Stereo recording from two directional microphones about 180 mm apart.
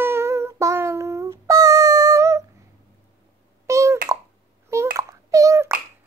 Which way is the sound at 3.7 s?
15° right (ahead or behind).